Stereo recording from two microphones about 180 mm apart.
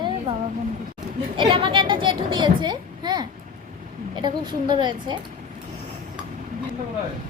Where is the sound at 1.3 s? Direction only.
25° right (ahead or behind).